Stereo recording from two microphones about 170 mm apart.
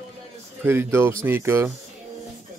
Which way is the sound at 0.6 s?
15° right (ahead or behind).